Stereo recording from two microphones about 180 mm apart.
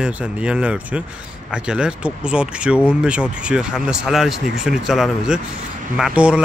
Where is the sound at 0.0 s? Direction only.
5° right (ahead or behind).